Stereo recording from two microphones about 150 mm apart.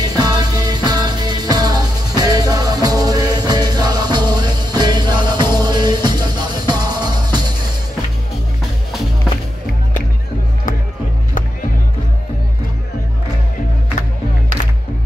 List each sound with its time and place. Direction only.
0.0 s music: 25° right (ahead or behind)